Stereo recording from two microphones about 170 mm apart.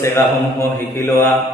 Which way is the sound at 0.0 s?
15° left (ahead or behind).